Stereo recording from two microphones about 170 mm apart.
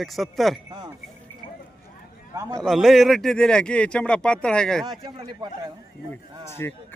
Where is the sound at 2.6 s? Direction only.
Centre (ahead or behind).